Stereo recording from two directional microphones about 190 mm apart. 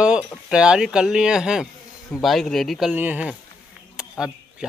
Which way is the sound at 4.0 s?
5° right (ahead or behind).